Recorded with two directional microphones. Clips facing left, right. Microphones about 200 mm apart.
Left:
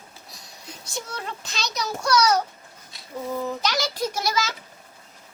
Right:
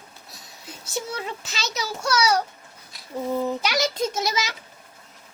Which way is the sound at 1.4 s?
5° right (ahead or behind).